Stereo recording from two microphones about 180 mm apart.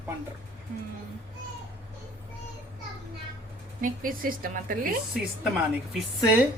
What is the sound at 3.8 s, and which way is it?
Speech, 50° right (ahead or behind).